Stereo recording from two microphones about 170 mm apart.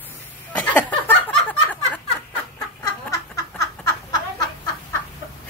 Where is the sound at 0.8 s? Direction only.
10° left (ahead or behind).